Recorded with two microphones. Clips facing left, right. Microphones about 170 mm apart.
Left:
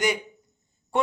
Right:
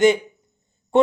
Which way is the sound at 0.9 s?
25° right (ahead or behind).